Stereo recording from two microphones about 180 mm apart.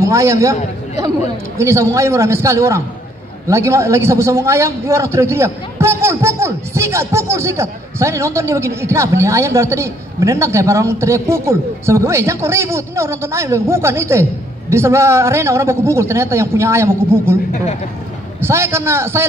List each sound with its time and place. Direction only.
0.0 s a man's voice: 15° right (ahead or behind)
1.6 s a man's voice: 15° right (ahead or behind)
18.4 s a man's voice: 15° right (ahead or behind)